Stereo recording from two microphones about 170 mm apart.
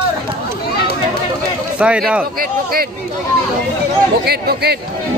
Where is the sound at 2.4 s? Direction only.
60° right (ahead or behind).